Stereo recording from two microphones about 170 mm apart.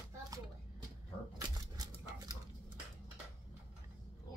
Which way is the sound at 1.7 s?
20° right (ahead or behind).